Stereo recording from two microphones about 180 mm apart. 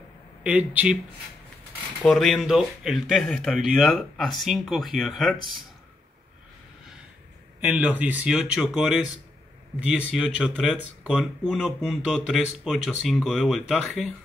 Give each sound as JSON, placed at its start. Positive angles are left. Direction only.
{"t": 0.4, "sound": "speech", "side_deg": -10}
{"t": 2.0, "sound": "speech", "side_deg": 0}
{"t": 7.6, "sound": "speech", "side_deg": -10}